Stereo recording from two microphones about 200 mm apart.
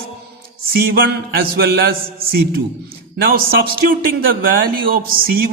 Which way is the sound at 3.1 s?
50° right (ahead or behind).